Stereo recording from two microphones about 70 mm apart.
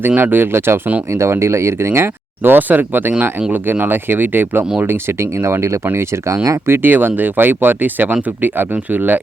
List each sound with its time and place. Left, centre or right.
0.2 s speech: right
6.7 s speech: right